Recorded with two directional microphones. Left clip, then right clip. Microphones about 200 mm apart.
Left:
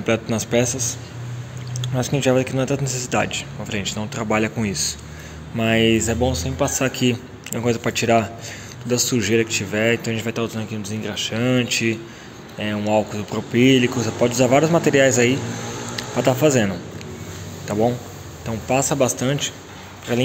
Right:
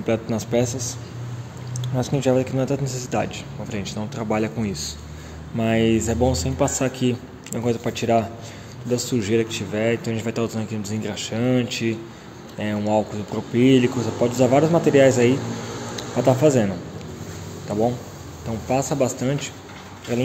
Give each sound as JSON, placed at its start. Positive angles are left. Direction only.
{"t": 0.0, "sound": "a man's voice", "side_deg": 0}
{"t": 6.8, "sound": "a man's voice", "side_deg": 0}